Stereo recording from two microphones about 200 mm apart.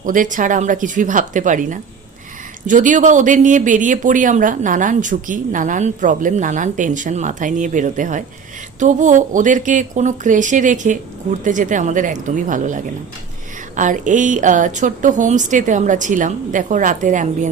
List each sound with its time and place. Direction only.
0.0 s speech: 40° right (ahead or behind)